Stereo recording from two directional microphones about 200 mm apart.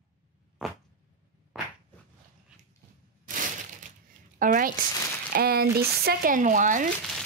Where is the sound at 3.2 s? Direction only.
40° right (ahead or behind).